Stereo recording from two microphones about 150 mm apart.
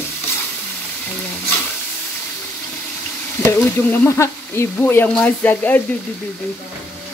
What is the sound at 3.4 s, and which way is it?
Speech, 15° left (ahead or behind).